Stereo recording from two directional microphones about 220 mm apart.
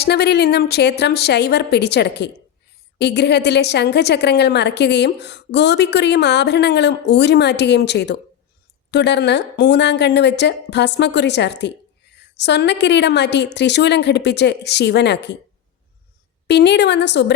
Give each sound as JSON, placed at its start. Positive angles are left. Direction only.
{"t": 0.0, "sound": "a woman's voice", "side_deg": 50}
{"t": 16.5, "sound": "a woman's voice", "side_deg": 50}